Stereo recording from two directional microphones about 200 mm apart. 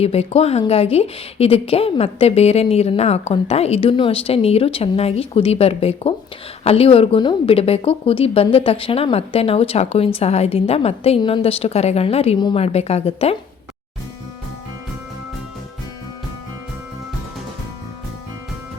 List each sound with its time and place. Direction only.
0.0 s a woman's voice: 30° left (ahead or behind)